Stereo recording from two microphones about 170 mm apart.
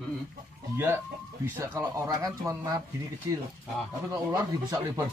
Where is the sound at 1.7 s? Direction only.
20° right (ahead or behind).